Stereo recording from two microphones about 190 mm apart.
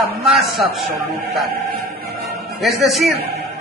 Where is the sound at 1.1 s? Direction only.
55° right (ahead or behind).